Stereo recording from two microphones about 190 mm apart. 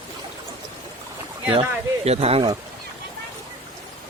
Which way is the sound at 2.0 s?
35° right (ahead or behind).